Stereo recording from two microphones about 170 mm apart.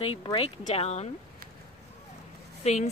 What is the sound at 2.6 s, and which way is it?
Speech, 40° left (ahead or behind).